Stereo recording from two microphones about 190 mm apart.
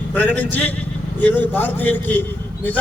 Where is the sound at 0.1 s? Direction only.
10° left (ahead or behind).